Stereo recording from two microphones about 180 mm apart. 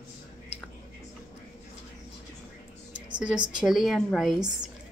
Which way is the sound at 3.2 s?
5° right (ahead or behind).